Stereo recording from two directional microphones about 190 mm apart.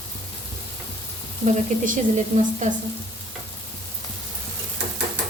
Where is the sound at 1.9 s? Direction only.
35° right (ahead or behind).